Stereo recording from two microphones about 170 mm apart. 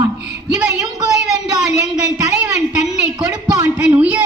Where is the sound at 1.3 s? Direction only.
20° right (ahead or behind).